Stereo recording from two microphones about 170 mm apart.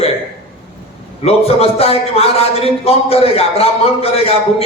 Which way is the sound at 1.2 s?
35° left (ahead or behind).